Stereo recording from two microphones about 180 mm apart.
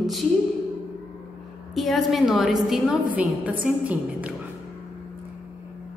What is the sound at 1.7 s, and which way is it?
A woman's voice, centre (ahead or behind).